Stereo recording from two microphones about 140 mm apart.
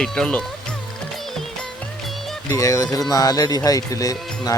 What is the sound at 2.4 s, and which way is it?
Speech, 25° left (ahead or behind).